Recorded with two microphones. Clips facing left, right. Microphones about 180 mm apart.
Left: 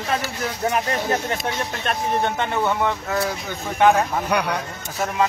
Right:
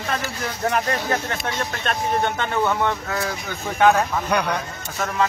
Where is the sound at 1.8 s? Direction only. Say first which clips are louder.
Even; 5° left (ahead or behind).